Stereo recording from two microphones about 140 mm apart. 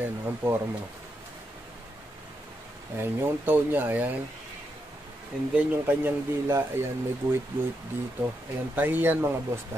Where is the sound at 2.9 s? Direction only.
15° right (ahead or behind).